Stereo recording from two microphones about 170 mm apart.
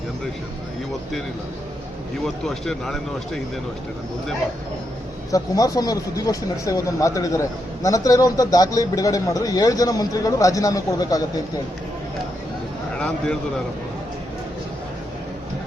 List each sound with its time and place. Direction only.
2.2 s speech: 5° left (ahead or behind)
5.3 s speech: 20° left (ahead or behind)
13.0 s speech: 5° left (ahead or behind)